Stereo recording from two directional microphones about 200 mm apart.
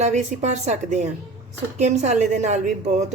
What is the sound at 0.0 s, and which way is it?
Speech, 35° right (ahead or behind).